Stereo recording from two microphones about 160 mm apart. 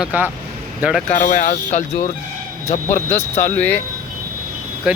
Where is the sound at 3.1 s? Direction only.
15° left (ahead or behind).